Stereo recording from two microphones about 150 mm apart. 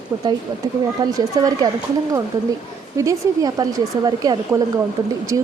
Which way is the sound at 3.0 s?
20° right (ahead or behind).